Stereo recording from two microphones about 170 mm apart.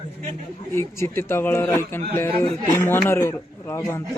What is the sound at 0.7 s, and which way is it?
A man's voice, 15° left (ahead or behind).